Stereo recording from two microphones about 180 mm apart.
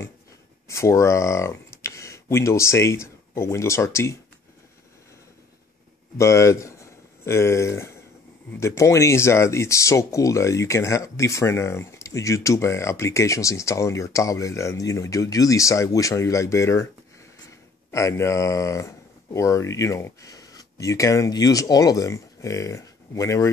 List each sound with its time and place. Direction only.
0.7 s speech: 15° left (ahead or behind)
6.1 s speech: 15° left (ahead or behind)
17.9 s speech: 15° left (ahead or behind)